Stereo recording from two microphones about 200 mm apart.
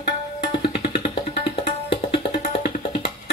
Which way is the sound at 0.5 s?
25° left (ahead or behind).